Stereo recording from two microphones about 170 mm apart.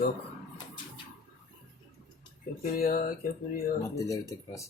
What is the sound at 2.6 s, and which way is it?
Speech, 55° left (ahead or behind).